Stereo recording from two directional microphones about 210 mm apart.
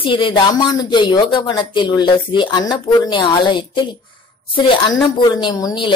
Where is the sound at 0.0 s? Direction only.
25° left (ahead or behind).